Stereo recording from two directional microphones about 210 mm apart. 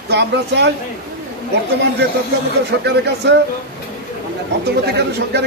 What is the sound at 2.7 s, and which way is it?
Speech, 55° right (ahead or behind).